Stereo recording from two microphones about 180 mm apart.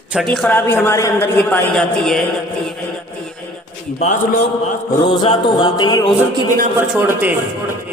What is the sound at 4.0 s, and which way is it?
Speech, 40° left (ahead or behind).